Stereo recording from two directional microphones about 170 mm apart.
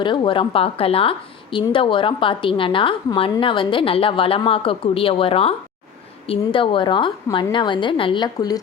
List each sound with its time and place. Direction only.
0.0 s a woman's voice: 30° left (ahead or behind)